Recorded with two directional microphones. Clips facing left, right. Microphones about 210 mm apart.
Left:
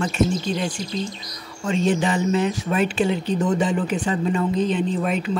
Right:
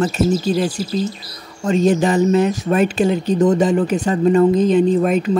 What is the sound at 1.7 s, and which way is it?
Speech, 40° right (ahead or behind).